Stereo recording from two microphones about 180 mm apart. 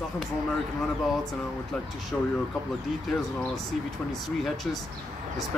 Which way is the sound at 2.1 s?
10° left (ahead or behind).